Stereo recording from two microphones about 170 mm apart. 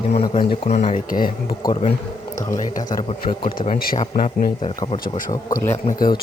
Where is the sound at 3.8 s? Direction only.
55° left (ahead or behind).